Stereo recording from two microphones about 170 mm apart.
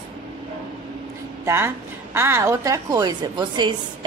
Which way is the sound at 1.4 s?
15° right (ahead or behind).